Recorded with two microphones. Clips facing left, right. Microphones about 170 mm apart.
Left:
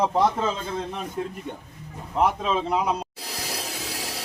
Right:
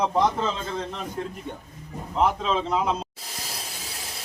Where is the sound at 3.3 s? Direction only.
90° left.